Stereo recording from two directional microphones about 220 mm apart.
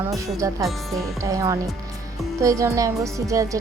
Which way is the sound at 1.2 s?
15° right (ahead or behind).